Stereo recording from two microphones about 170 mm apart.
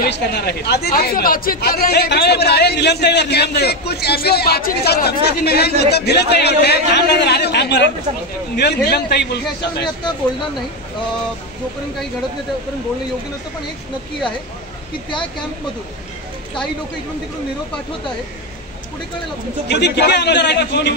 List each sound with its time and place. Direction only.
0.0 s speech: 70° left (ahead or behind)
8.5 s speech: 75° left (ahead or behind)
19.7 s a man's voice: 80° left